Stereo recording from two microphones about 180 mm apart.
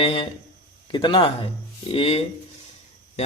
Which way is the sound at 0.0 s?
30° left (ahead or behind).